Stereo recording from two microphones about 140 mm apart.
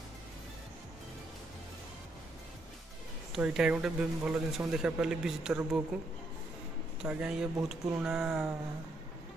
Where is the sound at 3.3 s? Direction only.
5° right (ahead or behind).